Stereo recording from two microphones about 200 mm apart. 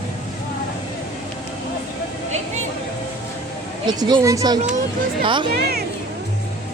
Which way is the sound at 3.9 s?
20° right (ahead or behind).